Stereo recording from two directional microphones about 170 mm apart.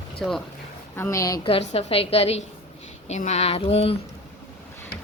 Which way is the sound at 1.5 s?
35° left (ahead or behind).